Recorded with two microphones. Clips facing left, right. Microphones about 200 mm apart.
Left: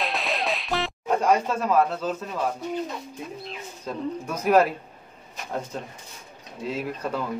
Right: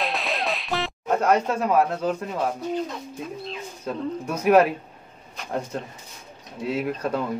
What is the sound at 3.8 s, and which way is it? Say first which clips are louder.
Speech: right 2 dB; 10° right (ahead or behind).